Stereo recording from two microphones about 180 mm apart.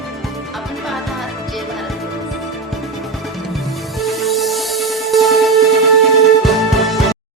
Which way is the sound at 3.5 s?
Centre (ahead or behind).